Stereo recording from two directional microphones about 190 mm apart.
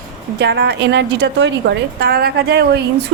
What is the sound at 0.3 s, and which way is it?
A woman's voice, 60° right (ahead or behind).